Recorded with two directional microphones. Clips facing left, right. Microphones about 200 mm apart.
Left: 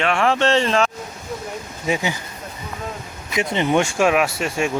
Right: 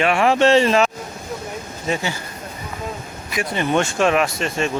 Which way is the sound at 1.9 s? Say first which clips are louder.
Left 1 dB; 15° left (ahead or behind).